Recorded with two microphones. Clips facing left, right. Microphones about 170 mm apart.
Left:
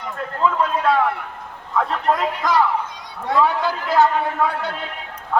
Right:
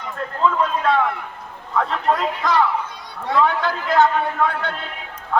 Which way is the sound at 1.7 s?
Centre (ahead or behind).